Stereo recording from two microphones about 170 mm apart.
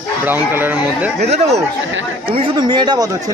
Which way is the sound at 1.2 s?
40° right (ahead or behind).